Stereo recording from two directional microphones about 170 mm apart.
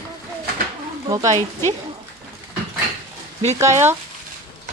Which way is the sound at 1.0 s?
20° right (ahead or behind).